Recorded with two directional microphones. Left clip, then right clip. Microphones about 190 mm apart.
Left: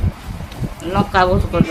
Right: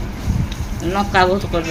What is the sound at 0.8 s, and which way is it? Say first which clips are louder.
Speech: even; 15° left (ahead or behind).